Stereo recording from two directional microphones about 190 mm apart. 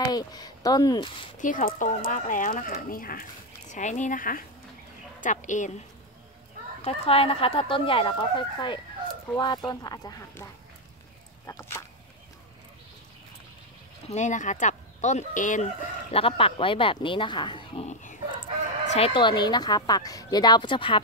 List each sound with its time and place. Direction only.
0.1 s speech: 20° left (ahead or behind)
1.4 s speech: 45° left (ahead or behind)
6.8 s speech: 30° left (ahead or behind); by 11.8 s 15° left (ahead or behind)
14.0 s speech: 40° left (ahead or behind)